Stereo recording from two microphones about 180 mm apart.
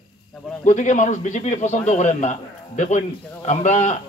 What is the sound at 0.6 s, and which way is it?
A man's voice, 45° left (ahead or behind).